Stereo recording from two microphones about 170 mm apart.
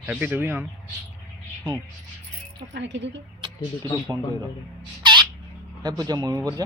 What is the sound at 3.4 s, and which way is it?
Speech, 20° right (ahead or behind).